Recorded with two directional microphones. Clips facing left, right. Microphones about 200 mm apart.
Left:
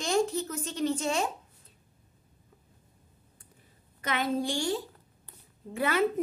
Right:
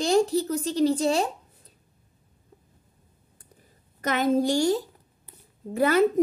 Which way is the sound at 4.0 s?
40° right (ahead or behind).